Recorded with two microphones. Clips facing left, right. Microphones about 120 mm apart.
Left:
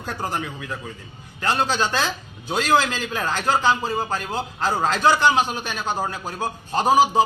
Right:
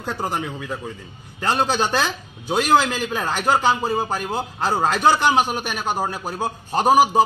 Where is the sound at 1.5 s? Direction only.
15° right (ahead or behind).